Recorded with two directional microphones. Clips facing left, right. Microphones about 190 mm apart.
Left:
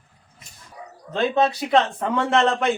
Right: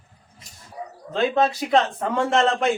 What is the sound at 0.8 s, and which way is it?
Bow-wow, 30° right (ahead or behind).